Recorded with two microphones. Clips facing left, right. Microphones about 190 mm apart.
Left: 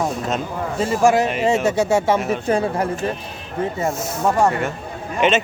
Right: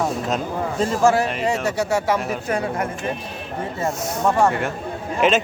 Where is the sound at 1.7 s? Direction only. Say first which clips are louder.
Left 4 dB; 25° left (ahead or behind).